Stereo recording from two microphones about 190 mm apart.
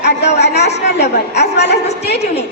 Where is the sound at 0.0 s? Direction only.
60° left (ahead or behind).